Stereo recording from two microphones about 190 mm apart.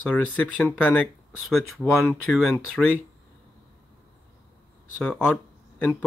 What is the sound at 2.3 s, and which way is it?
Speech, centre (ahead or behind).